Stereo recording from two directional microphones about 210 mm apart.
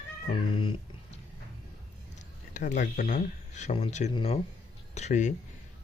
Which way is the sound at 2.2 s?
35° left (ahead or behind).